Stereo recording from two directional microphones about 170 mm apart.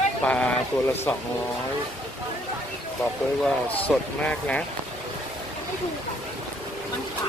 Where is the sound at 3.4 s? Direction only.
10° left (ahead or behind).